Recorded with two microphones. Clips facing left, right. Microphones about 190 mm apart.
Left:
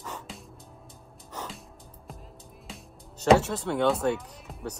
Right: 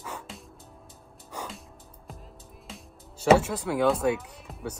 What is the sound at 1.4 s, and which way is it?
Music, 10° right (ahead or behind).